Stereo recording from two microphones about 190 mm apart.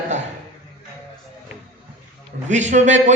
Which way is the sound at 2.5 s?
40° right (ahead or behind).